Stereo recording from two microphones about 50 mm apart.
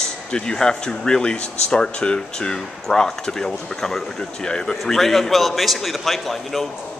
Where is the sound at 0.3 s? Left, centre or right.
Centre.